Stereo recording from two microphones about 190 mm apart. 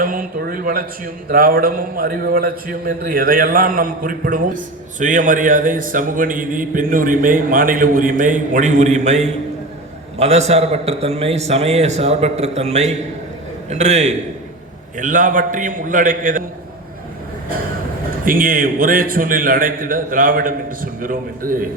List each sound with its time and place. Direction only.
0.0 s a man's voice: 45° right (ahead or behind)
18.3 s a man's voice: 45° right (ahead or behind)